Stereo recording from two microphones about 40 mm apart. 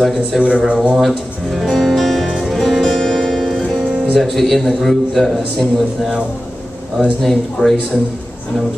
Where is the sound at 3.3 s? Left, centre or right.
Centre.